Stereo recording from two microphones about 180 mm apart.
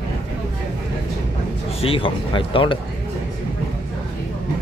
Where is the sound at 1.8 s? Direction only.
30° left (ahead or behind).